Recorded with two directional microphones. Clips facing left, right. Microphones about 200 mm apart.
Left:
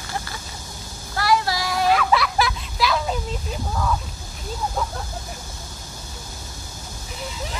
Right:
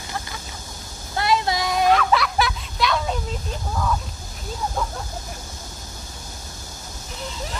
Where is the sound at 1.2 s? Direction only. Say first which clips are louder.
Even; 20° right (ahead or behind).